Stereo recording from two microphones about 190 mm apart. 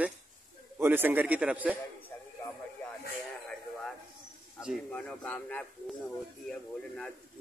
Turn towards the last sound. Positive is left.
turn(degrees=5)  # may be behind; listen again after turning